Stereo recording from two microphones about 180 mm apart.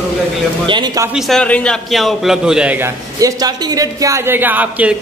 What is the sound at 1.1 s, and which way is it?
A man's voice, centre (ahead or behind).